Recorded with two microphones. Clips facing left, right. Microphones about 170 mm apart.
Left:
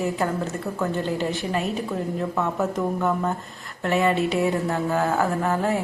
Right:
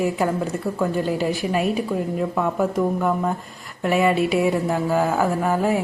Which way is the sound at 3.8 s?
15° right (ahead or behind).